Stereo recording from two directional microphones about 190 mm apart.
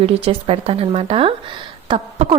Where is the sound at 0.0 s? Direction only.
30° right (ahead or behind).